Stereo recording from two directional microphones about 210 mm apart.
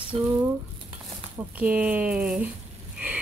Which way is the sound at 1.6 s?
5° right (ahead or behind).